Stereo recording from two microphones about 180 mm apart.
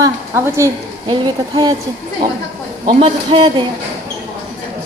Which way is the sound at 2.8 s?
30° right (ahead or behind).